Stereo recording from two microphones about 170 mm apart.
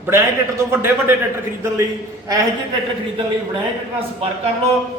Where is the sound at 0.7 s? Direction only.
15° right (ahead or behind).